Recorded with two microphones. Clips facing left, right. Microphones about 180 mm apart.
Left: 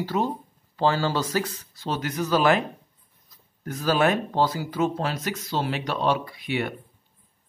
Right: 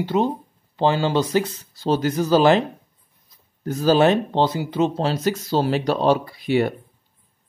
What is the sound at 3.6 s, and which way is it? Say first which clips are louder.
Speech: right 6 dB; 30° right (ahead or behind).